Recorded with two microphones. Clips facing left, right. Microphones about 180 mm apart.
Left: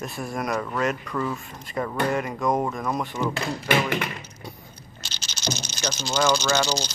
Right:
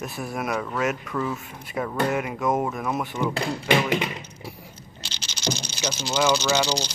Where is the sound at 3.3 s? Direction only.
30° right (ahead or behind).